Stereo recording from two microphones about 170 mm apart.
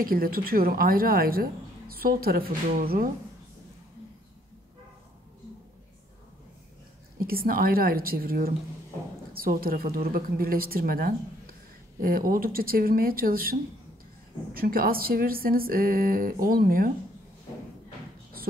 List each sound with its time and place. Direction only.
0.0 s a woman's voice: 60° right (ahead or behind)
7.2 s a woman's voice: 60° right (ahead or behind)